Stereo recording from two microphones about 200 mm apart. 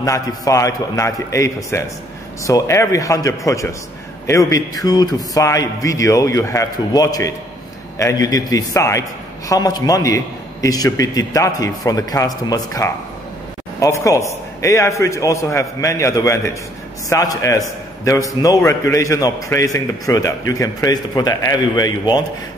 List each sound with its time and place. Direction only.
0.0 s a man's voice: 15° left (ahead or behind)